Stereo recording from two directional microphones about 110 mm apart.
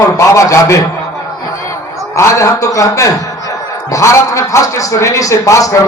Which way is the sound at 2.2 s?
25° left (ahead or behind).